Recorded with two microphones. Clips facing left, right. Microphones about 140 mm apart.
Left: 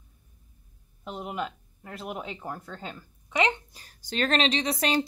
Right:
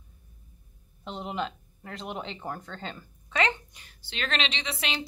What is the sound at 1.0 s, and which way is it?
Speech, 10° left (ahead or behind).